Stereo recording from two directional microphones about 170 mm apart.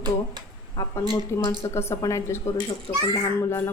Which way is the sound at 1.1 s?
15° left (ahead or behind).